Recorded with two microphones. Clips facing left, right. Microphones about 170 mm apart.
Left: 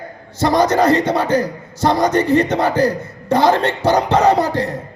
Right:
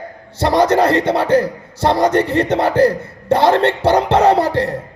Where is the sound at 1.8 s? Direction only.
30° right (ahead or behind).